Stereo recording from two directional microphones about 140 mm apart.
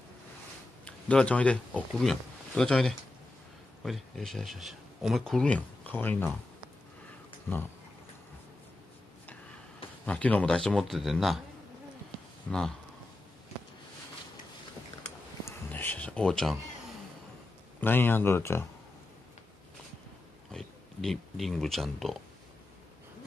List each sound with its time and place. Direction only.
0.8 s speech: 10° left (ahead or behind)
10.0 s a man's voice: 10° left (ahead or behind)
12.4 s speech: 5° left (ahead or behind)
15.4 s a sound: 15° left (ahead or behind)
17.7 s speech: 15° left (ahead or behind)
20.5 s speech: centre (ahead or behind)